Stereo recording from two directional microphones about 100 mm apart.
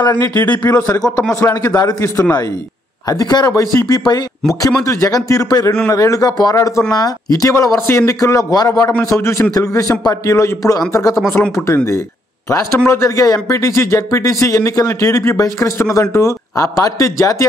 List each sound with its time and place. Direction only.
0.0 s a man's voice: 45° left (ahead or behind)
1.3 s speech: 35° left (ahead or behind)